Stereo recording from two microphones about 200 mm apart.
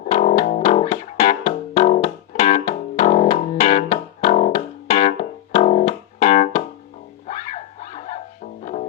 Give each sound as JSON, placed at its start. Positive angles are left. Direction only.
{"t": 0.1, "sound": "music", "side_deg": 35}
{"t": 7.3, "sound": "a sound", "side_deg": 35}
{"t": 8.6, "sound": "music", "side_deg": 35}